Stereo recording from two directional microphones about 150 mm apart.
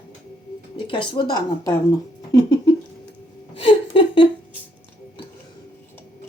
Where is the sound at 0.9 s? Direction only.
35° left (ahead or behind).